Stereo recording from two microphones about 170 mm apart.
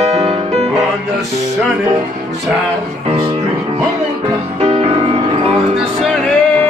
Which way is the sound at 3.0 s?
35° right (ahead or behind).